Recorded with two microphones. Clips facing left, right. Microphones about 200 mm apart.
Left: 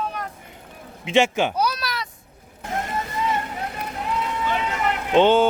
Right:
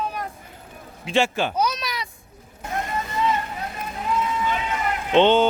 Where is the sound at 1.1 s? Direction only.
15° left (ahead or behind).